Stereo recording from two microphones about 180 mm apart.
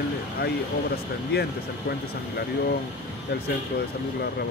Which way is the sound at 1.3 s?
60° left (ahead or behind).